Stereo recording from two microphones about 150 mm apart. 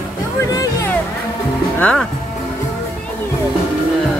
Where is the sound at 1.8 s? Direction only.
10° left (ahead or behind).